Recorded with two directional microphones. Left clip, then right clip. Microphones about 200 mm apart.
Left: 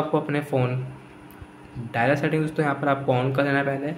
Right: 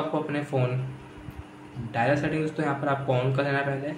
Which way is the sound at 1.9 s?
30° left (ahead or behind).